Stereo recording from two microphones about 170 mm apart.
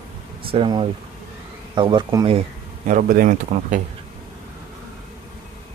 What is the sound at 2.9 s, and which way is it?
Speech, 55° right (ahead or behind).